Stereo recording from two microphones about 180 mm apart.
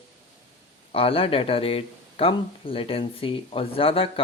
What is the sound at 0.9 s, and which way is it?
Speech, 30° left (ahead or behind).